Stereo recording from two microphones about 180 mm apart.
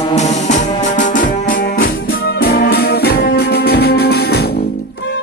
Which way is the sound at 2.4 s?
60° left (ahead or behind).